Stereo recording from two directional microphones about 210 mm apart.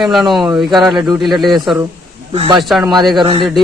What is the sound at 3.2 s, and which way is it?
Speech, 25° right (ahead or behind).